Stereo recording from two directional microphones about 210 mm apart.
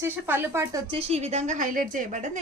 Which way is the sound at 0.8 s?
30° right (ahead or behind).